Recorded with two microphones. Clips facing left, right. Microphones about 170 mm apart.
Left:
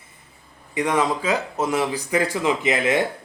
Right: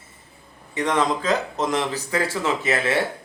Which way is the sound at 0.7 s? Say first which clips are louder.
Left 1 dB; 10° left (ahead or behind).